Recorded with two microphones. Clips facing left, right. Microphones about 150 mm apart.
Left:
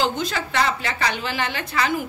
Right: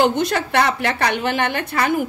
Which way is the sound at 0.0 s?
65° right (ahead or behind).